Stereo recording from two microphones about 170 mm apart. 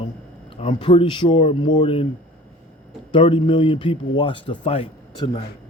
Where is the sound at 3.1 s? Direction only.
30° left (ahead or behind).